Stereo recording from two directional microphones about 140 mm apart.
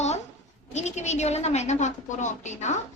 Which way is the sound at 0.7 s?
55° left (ahead or behind).